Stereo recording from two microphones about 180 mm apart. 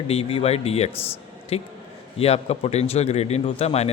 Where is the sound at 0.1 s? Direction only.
30° left (ahead or behind).